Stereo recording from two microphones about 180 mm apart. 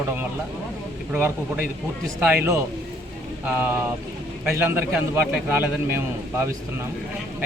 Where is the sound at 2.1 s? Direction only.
10° right (ahead or behind).